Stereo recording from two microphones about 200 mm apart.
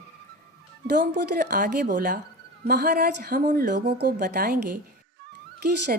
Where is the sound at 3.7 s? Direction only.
55° right (ahead or behind).